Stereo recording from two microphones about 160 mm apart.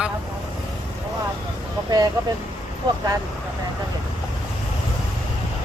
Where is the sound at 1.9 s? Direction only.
25° right (ahead or behind).